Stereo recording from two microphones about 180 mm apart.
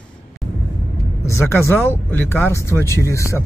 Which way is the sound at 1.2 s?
15° left (ahead or behind).